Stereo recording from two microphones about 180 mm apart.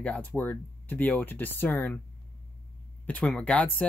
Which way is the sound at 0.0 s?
10° left (ahead or behind).